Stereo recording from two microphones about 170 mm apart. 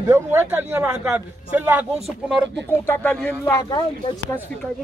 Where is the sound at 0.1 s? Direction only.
10° right (ahead or behind).